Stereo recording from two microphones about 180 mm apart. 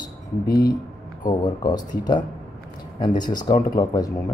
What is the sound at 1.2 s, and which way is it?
Speech, 25° left (ahead or behind).